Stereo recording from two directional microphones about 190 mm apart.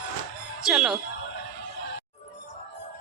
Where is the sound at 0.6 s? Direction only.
5° right (ahead or behind).